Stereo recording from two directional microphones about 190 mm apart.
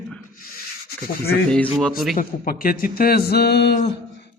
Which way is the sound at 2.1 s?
45° left (ahead or behind).